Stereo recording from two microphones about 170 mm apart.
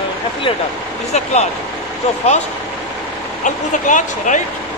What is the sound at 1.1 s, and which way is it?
Speech, 40° left (ahead or behind).